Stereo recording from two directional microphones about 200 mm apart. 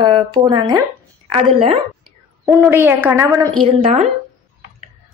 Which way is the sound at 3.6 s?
30° right (ahead or behind).